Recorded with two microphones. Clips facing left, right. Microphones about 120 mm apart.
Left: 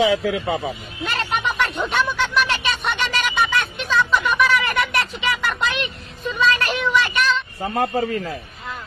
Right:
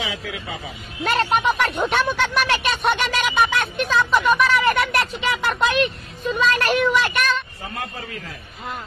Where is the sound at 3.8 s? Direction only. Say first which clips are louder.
Right 2 dB; 45° right (ahead or behind).